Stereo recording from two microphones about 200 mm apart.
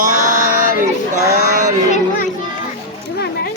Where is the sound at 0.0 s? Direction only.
40° right (ahead or behind).